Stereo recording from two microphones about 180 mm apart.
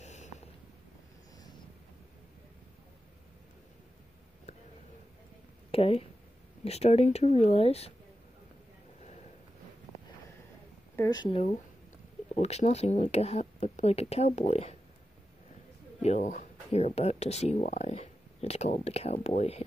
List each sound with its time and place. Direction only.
0.0 s a sound: 40° left (ahead or behind)
5.7 s speech: 35° left (ahead or behind)
11.0 s speech: 20° left (ahead or behind)
12.4 s speech: 35° left (ahead or behind)
16.0 s speech: 40° left (ahead or behind)